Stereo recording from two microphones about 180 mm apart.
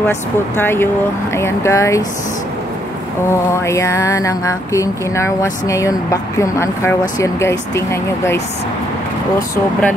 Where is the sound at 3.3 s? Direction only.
15° left (ahead or behind).